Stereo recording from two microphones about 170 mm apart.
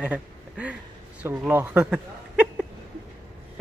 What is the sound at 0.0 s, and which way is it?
Speech, 10° right (ahead or behind).